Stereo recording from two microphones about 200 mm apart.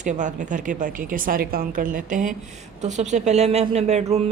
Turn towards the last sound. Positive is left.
turn(degrees=-35)  # may be behind; listen again after turning